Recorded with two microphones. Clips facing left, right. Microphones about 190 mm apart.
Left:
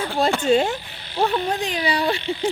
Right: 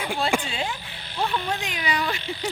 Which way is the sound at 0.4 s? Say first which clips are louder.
Left 13 dB; 45° left (ahead or behind).